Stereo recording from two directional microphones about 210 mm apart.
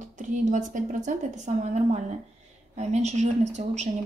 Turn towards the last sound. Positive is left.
turn(degrees=-35)  # may be behind; listen again after turning